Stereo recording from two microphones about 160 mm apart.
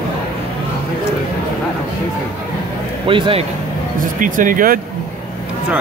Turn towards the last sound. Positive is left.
turn(degrees=-60)  # may be behind; listen again after turning